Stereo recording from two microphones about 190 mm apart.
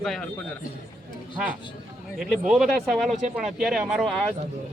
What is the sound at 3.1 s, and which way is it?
Speech, 40° right (ahead or behind).